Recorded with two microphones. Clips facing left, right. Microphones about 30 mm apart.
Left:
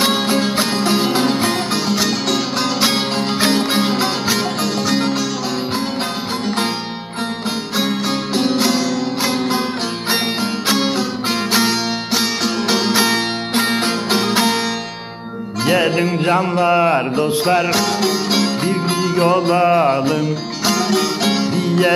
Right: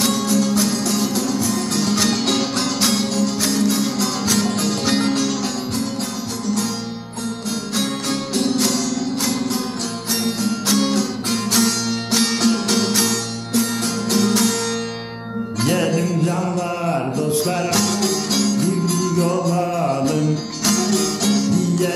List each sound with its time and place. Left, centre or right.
0.0 s music: left
1.7 s music: left
4.3 s music: left
8.4 s music: left
12.1 s music: centre; by 14.6 s left
15.6 s speech: left
18.5 s music: left